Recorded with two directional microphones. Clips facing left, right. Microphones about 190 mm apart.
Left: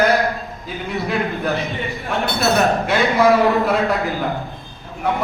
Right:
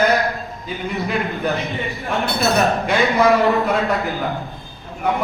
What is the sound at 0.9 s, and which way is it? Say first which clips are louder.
Speech: left 2 dB; centre (ahead or behind).